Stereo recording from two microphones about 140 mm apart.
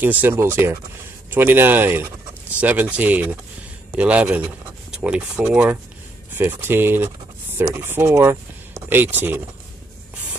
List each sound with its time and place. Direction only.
0.0 s speech: 15° right (ahead or behind)